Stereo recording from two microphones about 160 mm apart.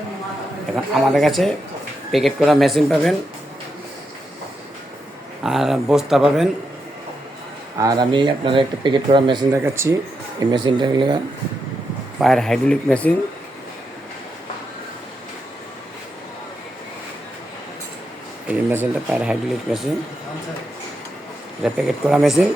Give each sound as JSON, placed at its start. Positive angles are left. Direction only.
{"t": 0.9, "sound": "speech", "side_deg": 0}
{"t": 5.4, "sound": "speech", "side_deg": -5}
{"t": 7.8, "sound": "speech", "side_deg": -25}
{"t": 9.7, "sound": "speech", "side_deg": -15}
{"t": 12.2, "sound": "speech", "side_deg": 0}
{"t": 18.4, "sound": "speech", "side_deg": -10}
{"t": 21.6, "sound": "speech", "side_deg": -5}